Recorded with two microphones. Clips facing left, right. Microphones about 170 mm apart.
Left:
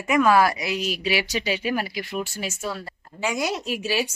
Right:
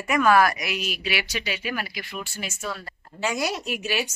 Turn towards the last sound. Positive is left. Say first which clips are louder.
# left 2 dB
turn(degrees=30)  # may be behind; listen again after turning